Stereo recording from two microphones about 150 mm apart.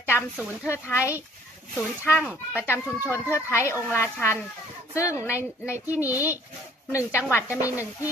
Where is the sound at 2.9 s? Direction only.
10° right (ahead or behind).